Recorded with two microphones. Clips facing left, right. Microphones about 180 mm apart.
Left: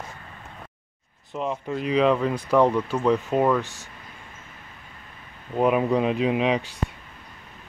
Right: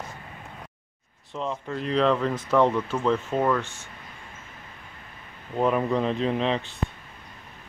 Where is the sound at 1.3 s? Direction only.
10° left (ahead or behind).